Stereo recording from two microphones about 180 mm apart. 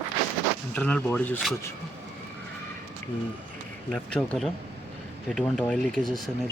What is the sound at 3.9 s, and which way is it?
Speech, 5° left (ahead or behind).